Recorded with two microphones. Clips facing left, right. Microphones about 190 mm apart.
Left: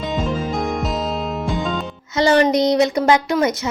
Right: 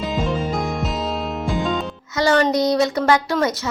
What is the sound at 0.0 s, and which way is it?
Music, centre (ahead or behind).